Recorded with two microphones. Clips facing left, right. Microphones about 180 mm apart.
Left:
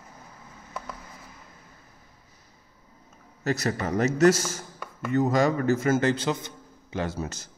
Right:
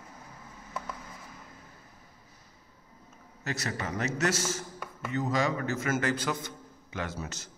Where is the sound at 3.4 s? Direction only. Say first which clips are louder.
Left 8 dB; 40° left (ahead or behind); by 7.0 s 20° left (ahead or behind).